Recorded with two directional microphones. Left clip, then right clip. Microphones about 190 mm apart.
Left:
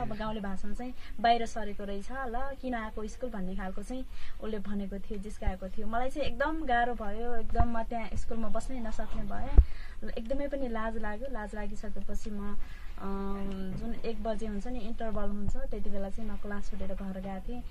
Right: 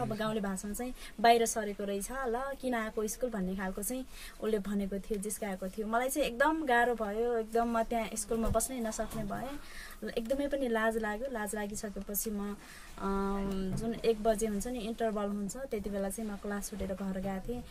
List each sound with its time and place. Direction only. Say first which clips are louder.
0.0 s a woman's voice: right 2 dB; 15° right (ahead or behind)